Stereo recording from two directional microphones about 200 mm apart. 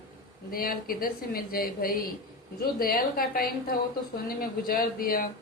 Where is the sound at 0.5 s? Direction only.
45° left (ahead or behind).